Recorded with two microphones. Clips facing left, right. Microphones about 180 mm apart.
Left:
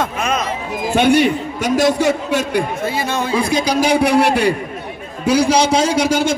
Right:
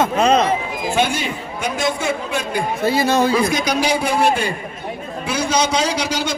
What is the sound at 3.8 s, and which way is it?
Speech, 65° left (ahead or behind).